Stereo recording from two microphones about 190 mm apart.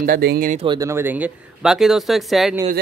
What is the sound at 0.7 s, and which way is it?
Speech, 15° right (ahead or behind).